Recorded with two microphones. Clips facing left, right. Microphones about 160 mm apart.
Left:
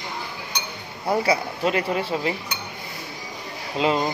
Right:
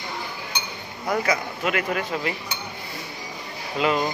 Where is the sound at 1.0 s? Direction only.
30° left (ahead or behind).